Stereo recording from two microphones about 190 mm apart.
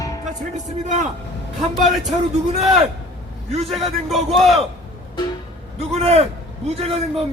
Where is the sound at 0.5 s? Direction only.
40° right (ahead or behind).